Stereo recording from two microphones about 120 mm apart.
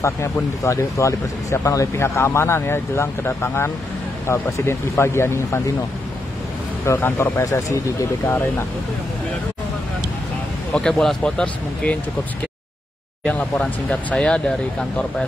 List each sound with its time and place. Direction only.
0.0 s speech: 25° left (ahead or behind)
6.9 s speech: 20° left (ahead or behind)
10.7 s speech: 5° left (ahead or behind)
13.2 s speech: 10° left (ahead or behind)